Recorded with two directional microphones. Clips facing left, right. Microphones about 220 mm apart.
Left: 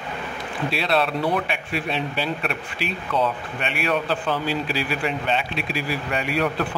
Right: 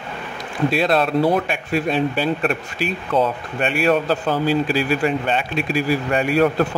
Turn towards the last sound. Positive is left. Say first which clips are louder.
# right 7 dB
turn(degrees=-45)  # may be behind; listen again after turning